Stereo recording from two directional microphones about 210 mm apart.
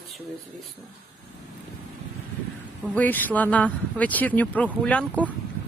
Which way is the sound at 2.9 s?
10° left (ahead or behind).